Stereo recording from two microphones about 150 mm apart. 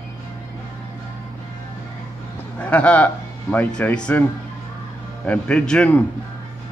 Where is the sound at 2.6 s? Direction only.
10° left (ahead or behind).